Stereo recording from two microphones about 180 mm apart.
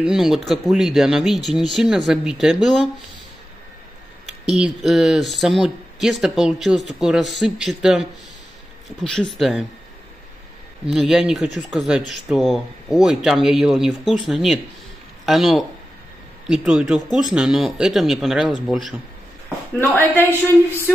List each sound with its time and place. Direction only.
0.0 s speech: centre (ahead or behind)
4.5 s speech: centre (ahead or behind)
10.9 s speech: centre (ahead or behind)
19.8 s speech: 10° left (ahead or behind)